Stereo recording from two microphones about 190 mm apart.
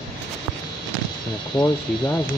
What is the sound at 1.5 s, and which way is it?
Speech, 20° left (ahead or behind).